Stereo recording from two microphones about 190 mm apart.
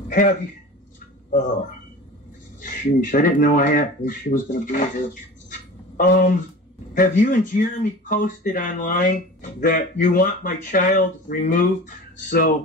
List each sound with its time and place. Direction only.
0.1 s speech: 45° left (ahead or behind)
2.6 s speech: 45° left (ahead or behind)